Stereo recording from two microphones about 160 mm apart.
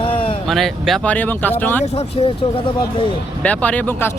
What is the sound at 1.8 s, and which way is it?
Speech, 40° left (ahead or behind).